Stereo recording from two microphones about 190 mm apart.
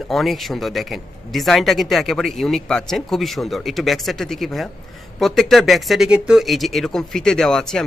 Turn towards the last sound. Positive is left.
turn(degrees=5)  # may be behind; listen again after turning